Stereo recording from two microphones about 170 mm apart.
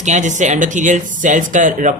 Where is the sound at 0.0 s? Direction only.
45° right (ahead or behind).